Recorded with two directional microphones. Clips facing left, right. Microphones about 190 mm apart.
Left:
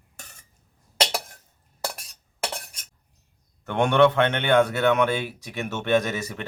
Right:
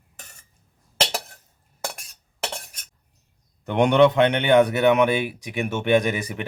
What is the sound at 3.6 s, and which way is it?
A man's voice, 15° right (ahead or behind).